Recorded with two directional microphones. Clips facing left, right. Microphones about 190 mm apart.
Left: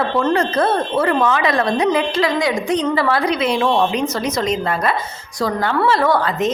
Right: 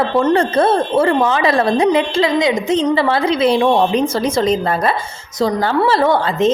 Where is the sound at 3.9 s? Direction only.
30° right (ahead or behind).